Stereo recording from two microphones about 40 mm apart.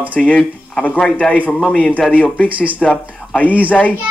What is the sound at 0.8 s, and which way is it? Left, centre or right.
A man's voice, left.